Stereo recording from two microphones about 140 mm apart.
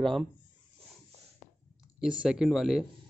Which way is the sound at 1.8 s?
5° right (ahead or behind).